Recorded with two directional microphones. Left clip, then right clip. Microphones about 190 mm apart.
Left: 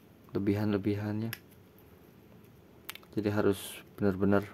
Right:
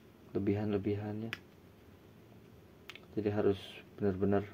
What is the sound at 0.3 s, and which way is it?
Speech, 30° left (ahead or behind).